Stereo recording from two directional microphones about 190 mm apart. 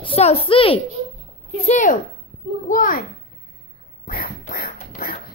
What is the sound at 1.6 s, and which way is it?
A child's voice, 40° left (ahead or behind).